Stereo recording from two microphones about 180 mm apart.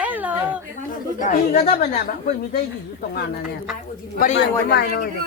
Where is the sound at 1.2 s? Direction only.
50° left (ahead or behind).